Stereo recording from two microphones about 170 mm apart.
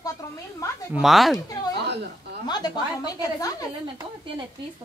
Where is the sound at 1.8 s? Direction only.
80° right.